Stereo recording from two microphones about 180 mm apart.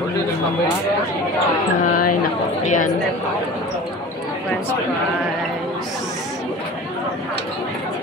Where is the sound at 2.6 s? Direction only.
45° left (ahead or behind).